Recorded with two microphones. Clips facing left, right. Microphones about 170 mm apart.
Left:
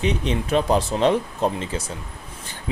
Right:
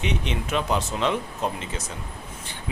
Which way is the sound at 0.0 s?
35° left (ahead or behind).